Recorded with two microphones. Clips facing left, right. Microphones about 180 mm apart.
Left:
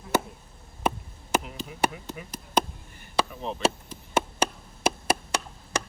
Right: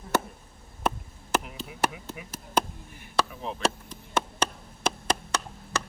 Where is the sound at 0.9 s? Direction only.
Centre (ahead or behind).